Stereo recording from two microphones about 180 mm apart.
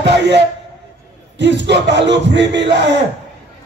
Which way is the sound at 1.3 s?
75° right (ahead or behind).